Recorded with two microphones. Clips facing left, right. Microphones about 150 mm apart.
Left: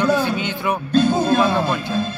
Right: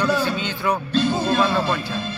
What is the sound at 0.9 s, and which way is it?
Music, 45° left (ahead or behind).